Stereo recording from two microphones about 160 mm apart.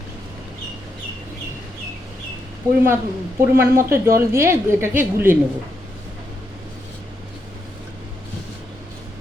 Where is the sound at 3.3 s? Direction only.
15° right (ahead or behind).